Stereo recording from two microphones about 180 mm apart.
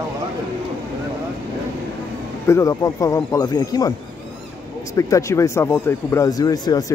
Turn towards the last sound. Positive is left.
turn(degrees=20)  # may be behind; listen again after turning